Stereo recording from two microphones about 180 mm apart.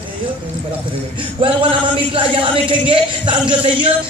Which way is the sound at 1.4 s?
30° right (ahead or behind).